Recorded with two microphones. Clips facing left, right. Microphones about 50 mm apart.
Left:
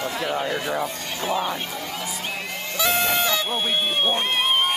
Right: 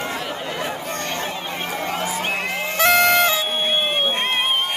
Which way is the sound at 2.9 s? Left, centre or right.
Right.